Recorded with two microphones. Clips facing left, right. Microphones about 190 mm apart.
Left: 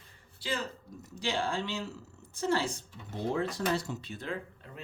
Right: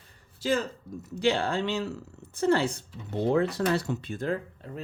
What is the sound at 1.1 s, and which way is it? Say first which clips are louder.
A woman's voice: right 7 dB; 60° right (ahead or behind).